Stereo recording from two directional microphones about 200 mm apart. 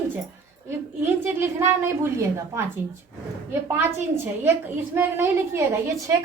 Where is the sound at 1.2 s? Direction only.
15° right (ahead or behind).